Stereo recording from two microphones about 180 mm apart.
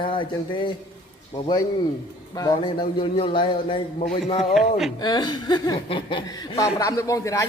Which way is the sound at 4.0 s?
35° left (ahead or behind).